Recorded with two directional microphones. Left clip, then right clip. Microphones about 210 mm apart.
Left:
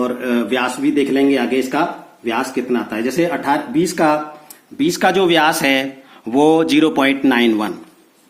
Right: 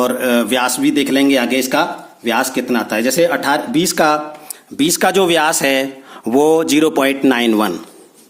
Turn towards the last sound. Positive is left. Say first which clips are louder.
# right 2 dB
turn(degrees=-45)  # may be behind; listen again after turning